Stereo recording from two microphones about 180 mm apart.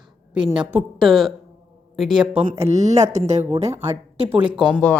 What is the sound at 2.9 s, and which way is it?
Speech, 40° right (ahead or behind).